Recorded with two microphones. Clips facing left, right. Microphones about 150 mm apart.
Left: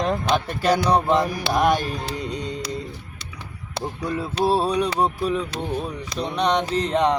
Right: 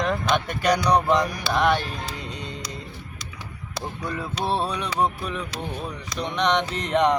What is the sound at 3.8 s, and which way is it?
Speech, 10° left (ahead or behind).